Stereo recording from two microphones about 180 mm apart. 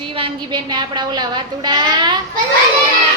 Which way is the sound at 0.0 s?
30° right (ahead or behind).